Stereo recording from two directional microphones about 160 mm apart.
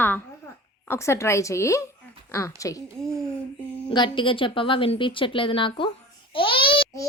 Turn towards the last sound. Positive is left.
turn(degrees=35)  # may be behind; listen again after turning